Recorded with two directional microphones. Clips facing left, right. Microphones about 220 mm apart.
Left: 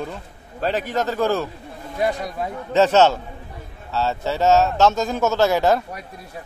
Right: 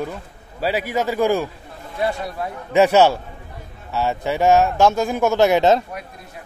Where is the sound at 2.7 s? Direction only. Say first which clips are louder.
Right 1 dB; 10° right (ahead or behind).